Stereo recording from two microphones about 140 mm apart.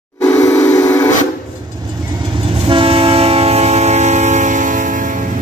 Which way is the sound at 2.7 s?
40° right (ahead or behind).